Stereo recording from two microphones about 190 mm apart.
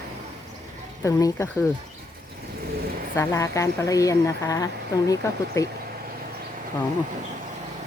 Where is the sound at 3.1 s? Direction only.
15° left (ahead or behind).